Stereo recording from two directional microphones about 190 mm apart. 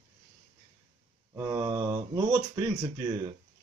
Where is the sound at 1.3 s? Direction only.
15° right (ahead or behind).